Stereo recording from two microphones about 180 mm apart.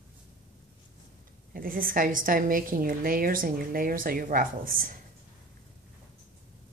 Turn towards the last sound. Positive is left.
turn(degrees=-50)  # may be behind; listen again after turning